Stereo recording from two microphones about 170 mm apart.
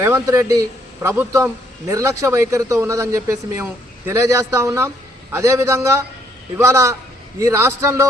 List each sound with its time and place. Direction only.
0.0 s a man's voice: 15° right (ahead or behind)